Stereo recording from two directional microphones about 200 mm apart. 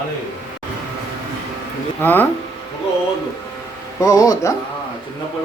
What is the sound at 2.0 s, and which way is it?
Speech, 10° left (ahead or behind).